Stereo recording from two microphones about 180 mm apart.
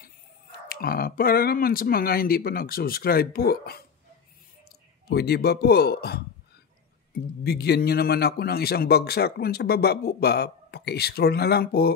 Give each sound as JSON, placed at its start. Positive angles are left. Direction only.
{"t": 0.7, "sound": "a man's voice", "side_deg": 55}
{"t": 5.0, "sound": "a man's voice", "side_deg": 60}
{"t": 7.4, "sound": "a man's voice", "side_deg": 65}